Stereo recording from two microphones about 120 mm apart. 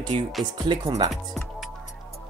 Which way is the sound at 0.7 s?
40° right (ahead or behind).